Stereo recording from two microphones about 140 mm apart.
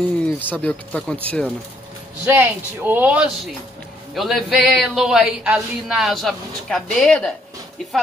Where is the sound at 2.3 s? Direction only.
15° right (ahead or behind).